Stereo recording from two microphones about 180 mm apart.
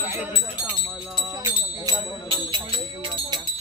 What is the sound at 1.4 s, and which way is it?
Speech, 20° right (ahead or behind).